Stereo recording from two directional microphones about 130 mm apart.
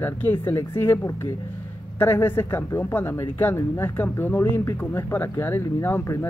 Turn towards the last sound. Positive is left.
turn(degrees=15)  # may be behind; listen again after turning